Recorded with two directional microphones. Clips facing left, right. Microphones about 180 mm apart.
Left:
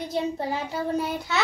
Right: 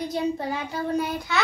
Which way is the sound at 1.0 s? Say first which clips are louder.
Right 2 dB; centre (ahead or behind).